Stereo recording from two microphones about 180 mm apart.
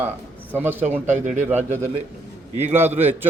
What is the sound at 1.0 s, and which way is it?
Speech, 40° right (ahead or behind).